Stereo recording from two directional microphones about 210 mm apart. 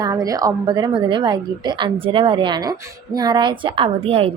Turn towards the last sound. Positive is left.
turn(degrees=-30)  # may be behind; listen again after turning